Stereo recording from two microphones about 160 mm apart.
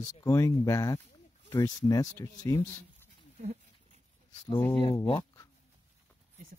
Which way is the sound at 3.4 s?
40° right (ahead or behind).